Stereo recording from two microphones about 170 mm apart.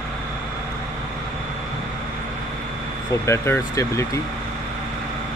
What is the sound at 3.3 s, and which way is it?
Speech, 15° left (ahead or behind).